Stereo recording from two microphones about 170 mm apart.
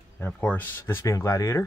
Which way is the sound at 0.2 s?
10° left (ahead or behind).